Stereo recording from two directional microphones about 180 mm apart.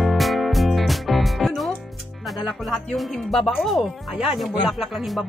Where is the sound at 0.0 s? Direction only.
Centre (ahead or behind).